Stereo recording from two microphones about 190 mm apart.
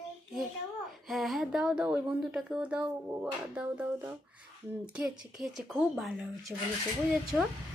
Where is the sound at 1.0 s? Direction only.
Centre (ahead or behind).